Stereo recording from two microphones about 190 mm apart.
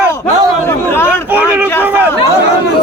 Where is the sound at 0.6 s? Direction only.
10° left (ahead or behind).